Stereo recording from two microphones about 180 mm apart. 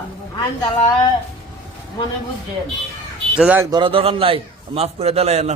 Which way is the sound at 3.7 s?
30° right (ahead or behind).